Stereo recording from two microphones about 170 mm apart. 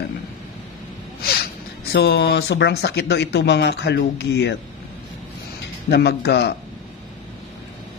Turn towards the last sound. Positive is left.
turn(degrees=75)  # may be behind; listen again after turning